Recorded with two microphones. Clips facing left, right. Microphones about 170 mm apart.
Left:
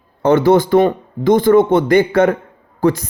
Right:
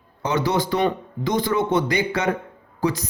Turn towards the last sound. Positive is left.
turn(degrees=55)  # may be behind; listen again after turning